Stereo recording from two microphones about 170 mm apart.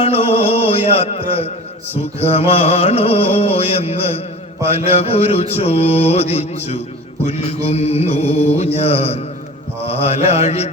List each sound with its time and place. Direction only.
0.0 s music: 35° left (ahead or behind)
2.1 s mantra: 35° left (ahead or behind)